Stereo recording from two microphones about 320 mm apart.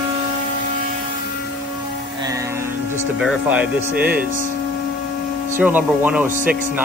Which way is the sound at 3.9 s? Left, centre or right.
Right.